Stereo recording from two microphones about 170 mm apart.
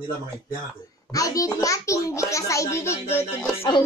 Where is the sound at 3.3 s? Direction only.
30° left (ahead or behind).